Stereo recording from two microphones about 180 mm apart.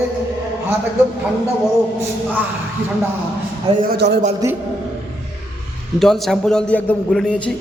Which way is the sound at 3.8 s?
60° right (ahead or behind).